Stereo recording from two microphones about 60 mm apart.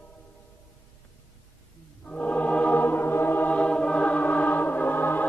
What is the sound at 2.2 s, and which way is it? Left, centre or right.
Music, left.